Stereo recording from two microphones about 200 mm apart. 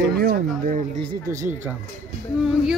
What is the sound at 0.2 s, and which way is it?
Speech, 50° right (ahead or behind).